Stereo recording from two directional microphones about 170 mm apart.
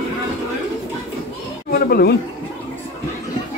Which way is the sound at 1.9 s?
65° left (ahead or behind).